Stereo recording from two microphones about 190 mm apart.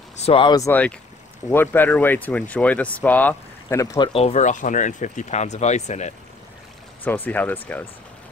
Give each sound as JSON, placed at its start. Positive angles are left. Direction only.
{"t": 0.2, "sound": "speech", "side_deg": 25}
{"t": 4.1, "sound": "speech", "side_deg": 35}
{"t": 7.1, "sound": "speech", "side_deg": 10}